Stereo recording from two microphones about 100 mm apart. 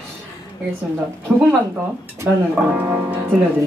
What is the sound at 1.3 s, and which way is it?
Speech, 25° right (ahead or behind).